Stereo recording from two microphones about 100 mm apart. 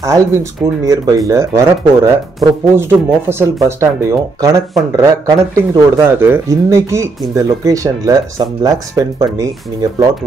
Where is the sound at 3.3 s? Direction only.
25° right (ahead or behind).